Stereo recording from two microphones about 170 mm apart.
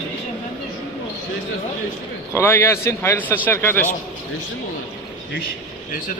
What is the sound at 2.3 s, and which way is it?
Speech, 15° left (ahead or behind).